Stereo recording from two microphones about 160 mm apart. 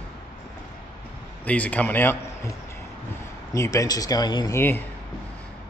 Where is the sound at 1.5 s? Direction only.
10° left (ahead or behind); by 4.5 s 25° left (ahead or behind).